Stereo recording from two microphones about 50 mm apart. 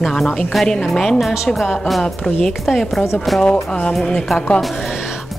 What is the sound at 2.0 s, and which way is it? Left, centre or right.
Speech, centre.